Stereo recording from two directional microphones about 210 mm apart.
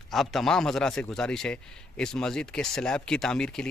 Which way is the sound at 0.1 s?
Centre (ahead or behind).